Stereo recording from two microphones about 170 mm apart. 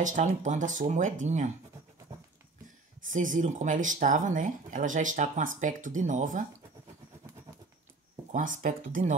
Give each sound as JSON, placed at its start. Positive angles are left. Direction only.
{"t": 0.0, "sound": "speech", "side_deg": -45}
{"t": 3.2, "sound": "speech", "side_deg": -45}
{"t": 8.3, "sound": "speech", "side_deg": -50}